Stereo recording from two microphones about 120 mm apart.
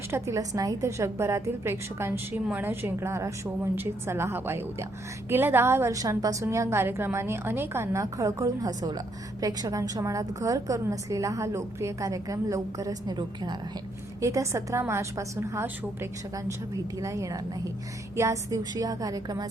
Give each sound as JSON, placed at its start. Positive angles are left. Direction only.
{"t": 0.1, "sound": "a woman's voice", "side_deg": -25}
{"t": 14.2, "sound": "a woman's voice", "side_deg": -25}